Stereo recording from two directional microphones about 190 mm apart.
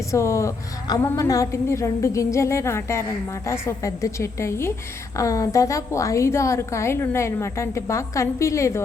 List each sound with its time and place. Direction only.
0.1 s a woman's voice: 15° left (ahead or behind)